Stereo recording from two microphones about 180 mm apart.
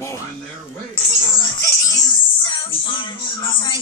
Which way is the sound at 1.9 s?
25° left (ahead or behind).